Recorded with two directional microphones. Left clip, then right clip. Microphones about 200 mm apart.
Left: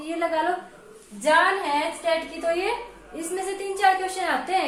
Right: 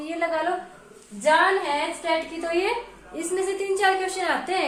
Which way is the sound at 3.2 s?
15° right (ahead or behind).